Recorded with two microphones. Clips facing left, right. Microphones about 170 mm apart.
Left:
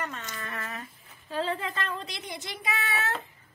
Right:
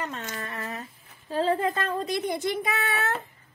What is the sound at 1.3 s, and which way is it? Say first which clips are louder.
Child singing: right 6 dB; 40° right (ahead or behind).